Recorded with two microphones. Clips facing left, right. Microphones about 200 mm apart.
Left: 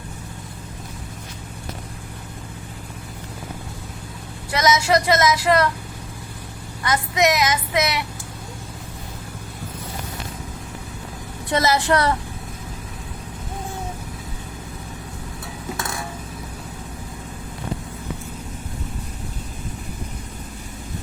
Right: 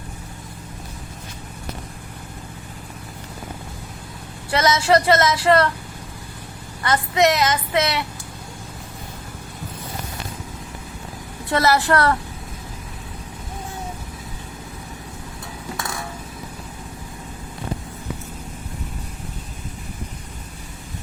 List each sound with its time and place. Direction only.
4.5 s a woman's voice: 15° left (ahead or behind)
6.8 s a woman's voice: 10° left (ahead or behind)
11.5 s a woman's voice: 15° left (ahead or behind)